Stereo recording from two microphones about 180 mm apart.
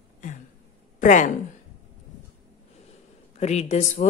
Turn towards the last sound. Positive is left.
turn(degrees=40)  # may be behind; listen again after turning